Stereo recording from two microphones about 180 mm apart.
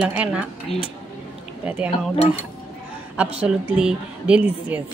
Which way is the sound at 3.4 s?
5° right (ahead or behind).